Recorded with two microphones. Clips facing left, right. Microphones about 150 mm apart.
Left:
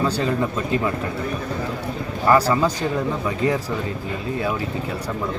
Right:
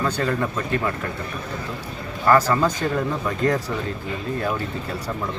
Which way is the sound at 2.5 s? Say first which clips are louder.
Left 1 dB; 10° left (ahead or behind).